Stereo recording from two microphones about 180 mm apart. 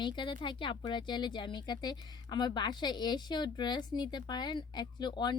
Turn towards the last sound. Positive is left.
turn(degrees=25)  # may be behind; listen again after turning